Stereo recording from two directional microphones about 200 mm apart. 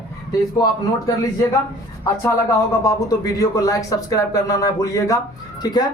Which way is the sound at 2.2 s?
15° left (ahead or behind).